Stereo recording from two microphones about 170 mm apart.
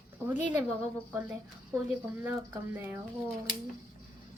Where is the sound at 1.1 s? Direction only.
10° right (ahead or behind).